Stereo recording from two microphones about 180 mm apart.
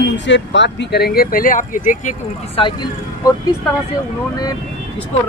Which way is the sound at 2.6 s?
30° left (ahead or behind).